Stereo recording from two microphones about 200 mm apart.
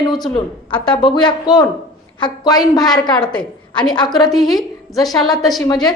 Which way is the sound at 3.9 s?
20° left (ahead or behind).